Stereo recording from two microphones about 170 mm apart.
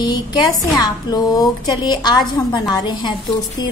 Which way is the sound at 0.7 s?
20° left (ahead or behind).